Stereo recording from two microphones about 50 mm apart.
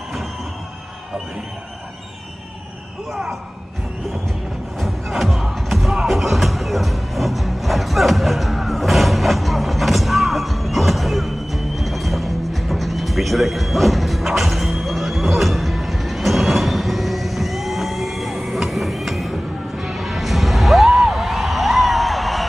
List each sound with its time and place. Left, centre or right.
3.1 s speech: centre
4.7 s music: centre